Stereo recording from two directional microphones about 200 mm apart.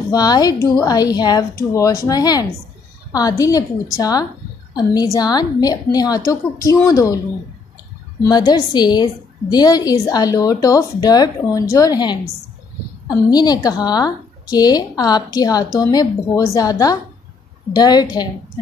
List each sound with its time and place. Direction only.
0.1 s a woman's voice: 20° left (ahead or behind)
8.2 s a woman's voice: 20° left (ahead or behind)